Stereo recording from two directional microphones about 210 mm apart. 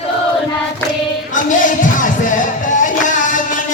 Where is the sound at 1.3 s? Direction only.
40° left (ahead or behind).